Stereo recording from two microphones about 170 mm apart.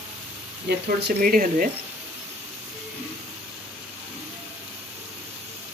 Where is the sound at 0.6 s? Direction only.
70° right (ahead or behind); by 1.7 s 55° right (ahead or behind).